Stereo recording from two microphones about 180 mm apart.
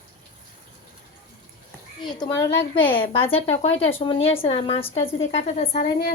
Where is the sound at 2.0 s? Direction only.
20° left (ahead or behind).